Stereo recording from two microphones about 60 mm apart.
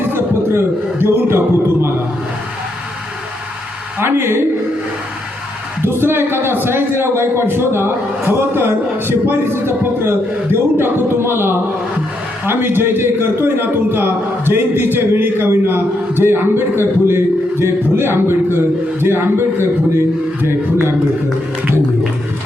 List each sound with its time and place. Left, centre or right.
0.1 s speech: right
4.0 s a man's voice: right
5.8 s a man's voice: right